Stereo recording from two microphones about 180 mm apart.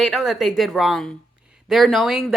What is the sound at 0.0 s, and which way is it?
Speech, centre (ahead or behind).